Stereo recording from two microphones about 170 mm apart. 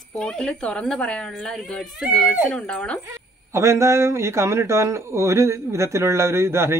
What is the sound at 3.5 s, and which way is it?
A man's voice, 15° right (ahead or behind).